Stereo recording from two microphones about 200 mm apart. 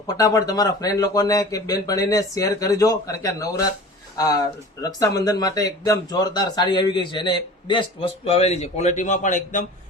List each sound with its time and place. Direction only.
0.2 s a man's voice: 20° left (ahead or behind); by 9.6 s 40° left (ahead or behind)